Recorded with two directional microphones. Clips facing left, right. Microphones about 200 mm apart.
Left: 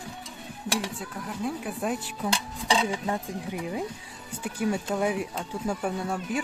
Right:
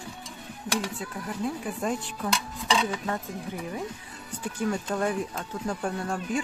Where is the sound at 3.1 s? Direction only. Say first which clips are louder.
Left 2 dB; 15° left (ahead or behind).